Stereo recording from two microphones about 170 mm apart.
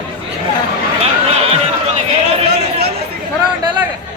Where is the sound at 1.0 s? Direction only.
40° right (ahead or behind).